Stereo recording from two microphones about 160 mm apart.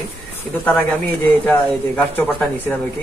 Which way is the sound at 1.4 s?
10° left (ahead or behind).